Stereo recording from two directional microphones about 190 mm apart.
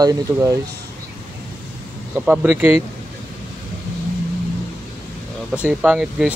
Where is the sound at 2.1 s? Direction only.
10° right (ahead or behind).